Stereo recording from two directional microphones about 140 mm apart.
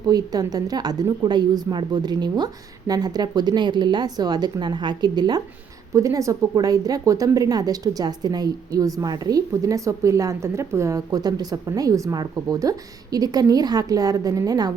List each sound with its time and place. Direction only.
0.1 s a woman's voice: 25° right (ahead or behind)